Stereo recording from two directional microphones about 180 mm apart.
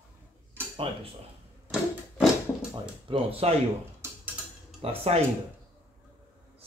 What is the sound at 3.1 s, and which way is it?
Cutlery, 30° right (ahead or behind).